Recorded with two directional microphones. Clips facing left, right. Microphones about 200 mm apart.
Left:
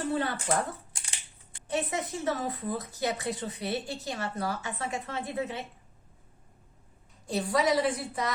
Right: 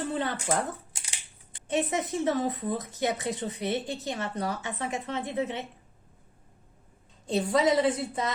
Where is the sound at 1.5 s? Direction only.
20° right (ahead or behind).